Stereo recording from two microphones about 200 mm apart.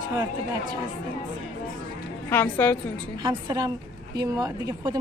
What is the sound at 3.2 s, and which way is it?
Speech, 20° right (ahead or behind).